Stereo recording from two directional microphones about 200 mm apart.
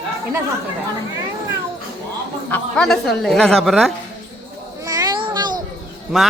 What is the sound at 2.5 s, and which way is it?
Speech, 5° left (ahead or behind).